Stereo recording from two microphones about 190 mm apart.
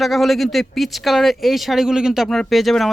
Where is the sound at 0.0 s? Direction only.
Centre (ahead or behind).